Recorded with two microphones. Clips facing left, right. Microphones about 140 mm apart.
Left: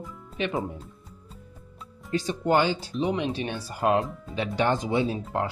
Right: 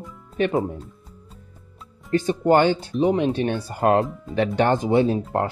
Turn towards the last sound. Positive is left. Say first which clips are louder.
# right 6 dB
turn(degrees=-55)  # may be behind; listen again after turning